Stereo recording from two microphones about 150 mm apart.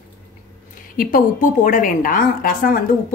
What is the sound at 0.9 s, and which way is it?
A woman's voice, 65° left (ahead or behind).